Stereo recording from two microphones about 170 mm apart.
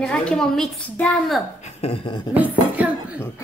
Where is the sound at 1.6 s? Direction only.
35° left (ahead or behind).